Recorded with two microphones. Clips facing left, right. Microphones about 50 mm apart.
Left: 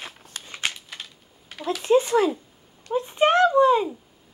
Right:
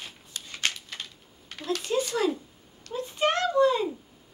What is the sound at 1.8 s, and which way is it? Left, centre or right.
Speech, left.